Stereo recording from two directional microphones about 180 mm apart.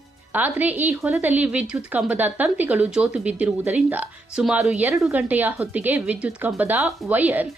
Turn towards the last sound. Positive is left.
turn(degrees=-10)  # may be behind; listen again after turning